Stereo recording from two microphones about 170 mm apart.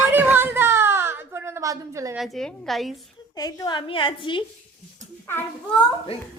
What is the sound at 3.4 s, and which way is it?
A woman's voice, 20° left (ahead or behind).